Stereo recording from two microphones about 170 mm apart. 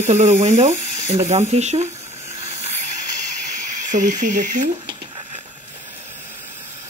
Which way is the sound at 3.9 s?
50° right (ahead or behind).